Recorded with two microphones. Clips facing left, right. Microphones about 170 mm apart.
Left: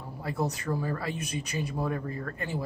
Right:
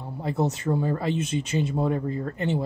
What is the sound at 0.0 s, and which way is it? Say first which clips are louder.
Speech: right 5 dB; 25° right (ahead or behind).